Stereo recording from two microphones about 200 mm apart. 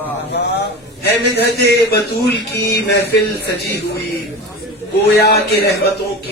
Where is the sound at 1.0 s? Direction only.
55° left (ahead or behind).